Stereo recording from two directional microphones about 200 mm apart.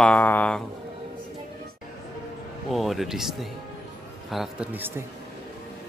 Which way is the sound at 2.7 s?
Centre (ahead or behind).